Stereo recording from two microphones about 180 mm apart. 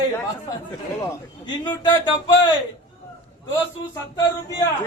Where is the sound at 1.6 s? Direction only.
25° left (ahead or behind).